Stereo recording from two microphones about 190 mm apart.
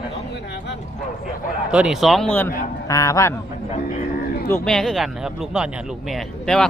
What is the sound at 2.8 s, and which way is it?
Speech, 15° left (ahead or behind).